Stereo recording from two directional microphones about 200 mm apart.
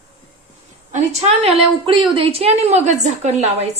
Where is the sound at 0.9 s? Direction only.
35° right (ahead or behind).